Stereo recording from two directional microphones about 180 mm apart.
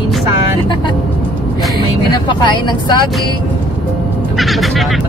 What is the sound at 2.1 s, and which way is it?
Speech, 25° left (ahead or behind).